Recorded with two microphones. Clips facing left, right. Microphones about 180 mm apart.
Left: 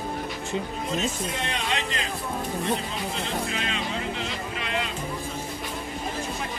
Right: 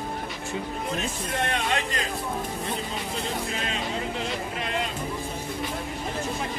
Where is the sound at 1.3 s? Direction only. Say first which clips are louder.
Right 3 dB; 55° right (ahead or behind).